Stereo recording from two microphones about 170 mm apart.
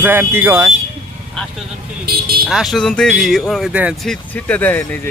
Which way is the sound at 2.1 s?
60° right (ahead or behind).